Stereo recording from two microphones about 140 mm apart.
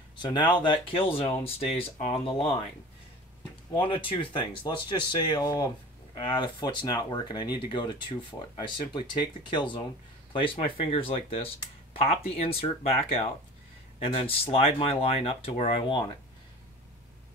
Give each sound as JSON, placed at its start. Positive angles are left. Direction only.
{"t": 0.2, "sound": "speech", "side_deg": 35}
{"t": 3.7, "sound": "speech", "side_deg": 40}